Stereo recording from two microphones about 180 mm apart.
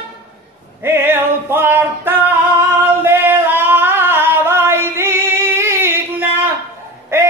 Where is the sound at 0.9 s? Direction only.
10° right (ahead or behind).